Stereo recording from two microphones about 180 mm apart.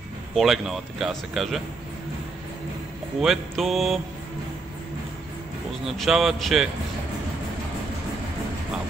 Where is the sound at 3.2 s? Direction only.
Centre (ahead or behind).